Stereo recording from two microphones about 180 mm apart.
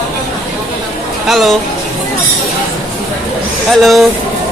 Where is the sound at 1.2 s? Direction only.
Centre (ahead or behind).